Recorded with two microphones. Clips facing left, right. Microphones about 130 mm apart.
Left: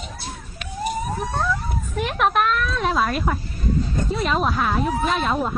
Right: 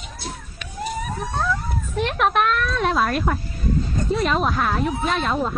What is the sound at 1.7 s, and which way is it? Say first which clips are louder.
A woman's voice: right 1 dB; centre (ahead or behind).